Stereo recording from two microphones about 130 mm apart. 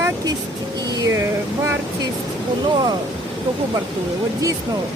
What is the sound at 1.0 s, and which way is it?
Vehicle, 25° right (ahead or behind).